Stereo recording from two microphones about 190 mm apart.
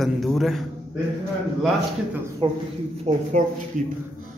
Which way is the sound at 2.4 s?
30° right (ahead or behind).